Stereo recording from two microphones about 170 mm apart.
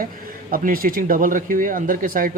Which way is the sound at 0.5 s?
55° right (ahead or behind).